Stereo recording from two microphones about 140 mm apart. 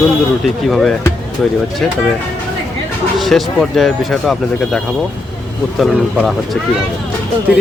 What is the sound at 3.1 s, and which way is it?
Speech, centre (ahead or behind).